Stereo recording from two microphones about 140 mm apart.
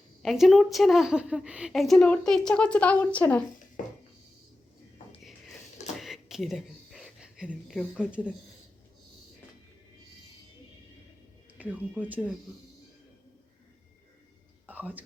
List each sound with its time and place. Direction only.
0.2 s a woman's voice: centre (ahead or behind)
6.0 s a sound: centre (ahead or behind)
11.5 s speech: 10° right (ahead or behind)
14.7 s whispering: 10° right (ahead or behind)